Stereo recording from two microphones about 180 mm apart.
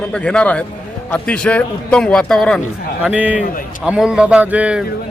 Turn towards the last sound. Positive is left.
turn(degrees=-5)  # may be behind; listen again after turning